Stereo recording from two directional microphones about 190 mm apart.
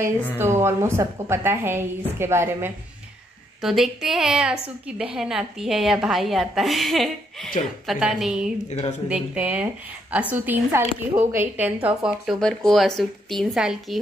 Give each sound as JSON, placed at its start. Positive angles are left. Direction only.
{"t": 0.4, "sound": "a woman's voice", "side_deg": -15}
{"t": 3.6, "sound": "a woman's voice", "side_deg": 0}
{"t": 8.6, "sound": "speech", "side_deg": 35}
{"t": 9.1, "sound": "a woman's voice", "side_deg": -5}